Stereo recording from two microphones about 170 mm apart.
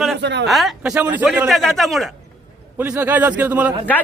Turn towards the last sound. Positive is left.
turn(degrees=-10)  # may be behind; listen again after turning